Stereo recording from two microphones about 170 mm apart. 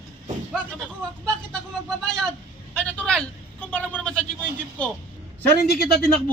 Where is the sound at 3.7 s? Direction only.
5° left (ahead or behind).